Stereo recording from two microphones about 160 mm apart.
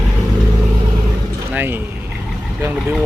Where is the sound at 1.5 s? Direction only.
10° right (ahead or behind).